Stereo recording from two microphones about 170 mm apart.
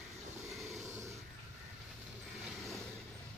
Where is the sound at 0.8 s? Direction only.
15° right (ahead or behind).